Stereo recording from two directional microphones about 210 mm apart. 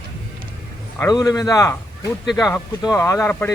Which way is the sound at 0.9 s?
15° left (ahead or behind).